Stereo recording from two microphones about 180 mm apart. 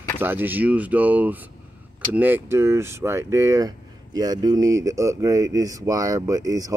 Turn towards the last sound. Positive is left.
turn(degrees=-20)  # may be behind; listen again after turning